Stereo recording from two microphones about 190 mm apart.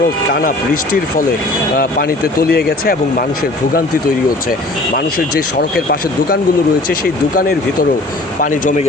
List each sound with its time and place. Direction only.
0.3 s speech: 50° left (ahead or behind)
4.9 s speech: 50° left (ahead or behind)